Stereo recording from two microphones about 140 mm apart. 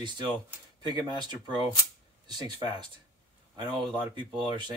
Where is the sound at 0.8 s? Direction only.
30° right (ahead or behind).